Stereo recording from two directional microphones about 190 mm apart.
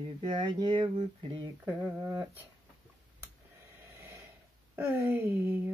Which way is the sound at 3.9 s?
15° right (ahead or behind).